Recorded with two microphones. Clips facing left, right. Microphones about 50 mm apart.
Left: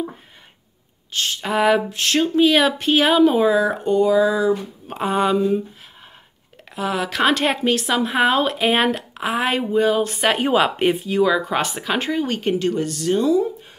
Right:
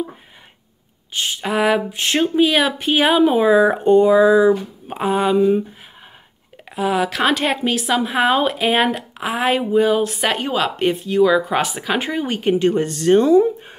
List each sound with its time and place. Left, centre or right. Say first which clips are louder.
1.1 s speech: right 1 dB; centre
1.5 s a woman's voice: even; centre
1.9 s speech: right 1 dB; centre
3.6 s a sound: right 5 dB; right
4.8 s a woman's voice: right 1 dB; centre
6.7 s a woman's voice: right 4 dB; centre
12.5 s speech: right 4 dB; right